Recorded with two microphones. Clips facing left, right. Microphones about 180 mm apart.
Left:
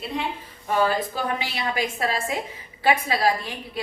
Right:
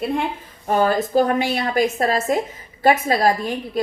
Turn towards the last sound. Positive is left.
turn(degrees=-45)  # may be behind; listen again after turning